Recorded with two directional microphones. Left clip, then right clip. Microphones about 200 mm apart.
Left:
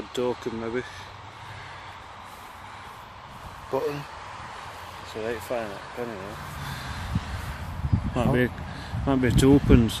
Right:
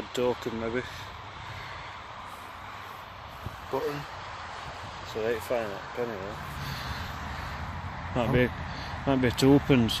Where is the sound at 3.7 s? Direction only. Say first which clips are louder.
Left 3 dB; 45° left (ahead or behind).